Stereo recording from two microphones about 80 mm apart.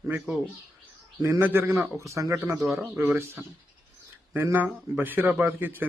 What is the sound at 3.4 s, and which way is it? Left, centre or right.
Speech, right.